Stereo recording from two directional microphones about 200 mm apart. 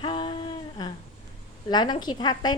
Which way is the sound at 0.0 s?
25° left (ahead or behind).